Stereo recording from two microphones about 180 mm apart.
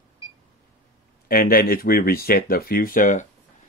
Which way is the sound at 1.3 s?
55° left (ahead or behind).